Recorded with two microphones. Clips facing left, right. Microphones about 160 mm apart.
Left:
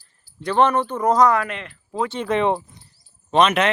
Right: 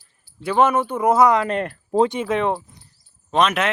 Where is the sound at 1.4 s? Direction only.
45° right (ahead or behind).